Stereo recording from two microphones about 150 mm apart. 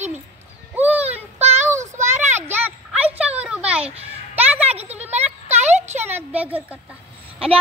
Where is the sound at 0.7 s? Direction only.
10° right (ahead or behind).